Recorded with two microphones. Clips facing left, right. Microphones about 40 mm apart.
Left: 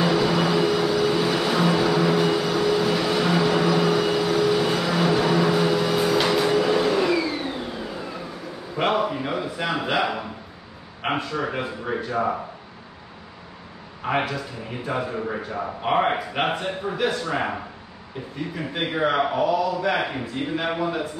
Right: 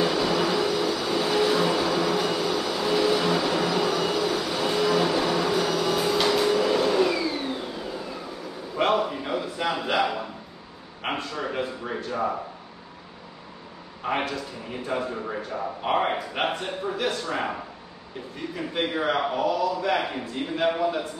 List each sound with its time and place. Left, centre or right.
0.0 s vehicle: centre
8.7 s a sound: centre
11.0 s a man's voice: centre
14.0 s speech: centre
14.9 s speech: centre
18.7 s speech: centre